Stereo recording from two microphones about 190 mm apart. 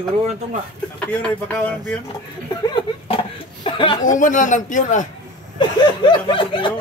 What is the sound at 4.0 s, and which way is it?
A man's voice, 40° left (ahead or behind).